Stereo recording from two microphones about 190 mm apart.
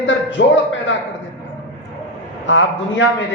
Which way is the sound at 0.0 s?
75° left (ahead or behind).